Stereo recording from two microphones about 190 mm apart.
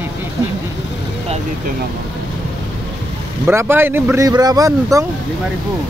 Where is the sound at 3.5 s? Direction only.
10° right (ahead or behind).